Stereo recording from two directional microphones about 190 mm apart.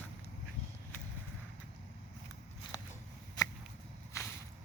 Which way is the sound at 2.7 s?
20° left (ahead or behind).